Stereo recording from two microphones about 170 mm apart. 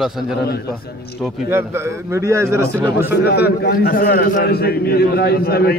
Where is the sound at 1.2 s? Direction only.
5° right (ahead or behind).